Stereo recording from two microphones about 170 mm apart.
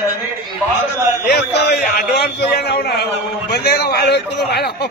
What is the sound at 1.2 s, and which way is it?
A man's voice, 75° left (ahead or behind).